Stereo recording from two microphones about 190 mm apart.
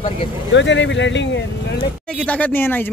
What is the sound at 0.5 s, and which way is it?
Speech, 70° left (ahead or behind).